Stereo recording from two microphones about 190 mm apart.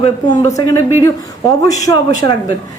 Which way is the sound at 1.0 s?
20° left (ahead or behind).